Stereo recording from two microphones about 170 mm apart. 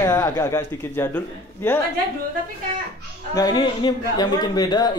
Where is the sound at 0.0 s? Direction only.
20° left (ahead or behind).